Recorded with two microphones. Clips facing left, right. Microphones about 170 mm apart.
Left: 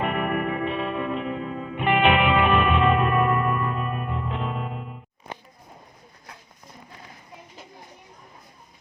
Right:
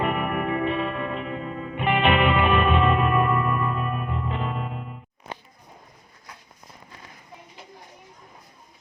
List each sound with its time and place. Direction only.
0.0 s music: centre (ahead or behind)